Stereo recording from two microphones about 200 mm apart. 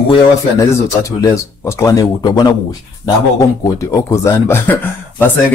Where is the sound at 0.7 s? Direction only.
15° left (ahead or behind).